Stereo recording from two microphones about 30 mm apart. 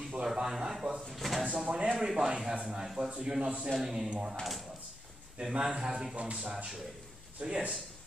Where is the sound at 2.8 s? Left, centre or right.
Centre.